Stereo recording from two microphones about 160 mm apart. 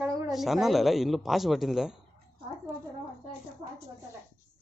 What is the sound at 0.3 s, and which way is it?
A woman's voice, centre (ahead or behind).